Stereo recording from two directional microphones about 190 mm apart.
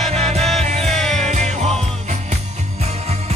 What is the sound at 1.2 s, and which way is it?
Music, 35° right (ahead or behind).